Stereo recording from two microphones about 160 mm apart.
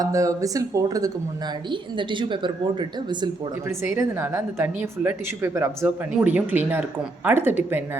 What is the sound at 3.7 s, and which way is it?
Speech, 15° right (ahead or behind).